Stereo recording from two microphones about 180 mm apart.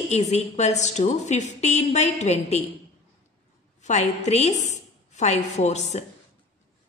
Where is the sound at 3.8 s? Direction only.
40° left (ahead or behind).